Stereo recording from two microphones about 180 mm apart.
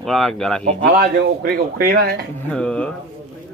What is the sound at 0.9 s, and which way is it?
Speech, 60° right (ahead or behind).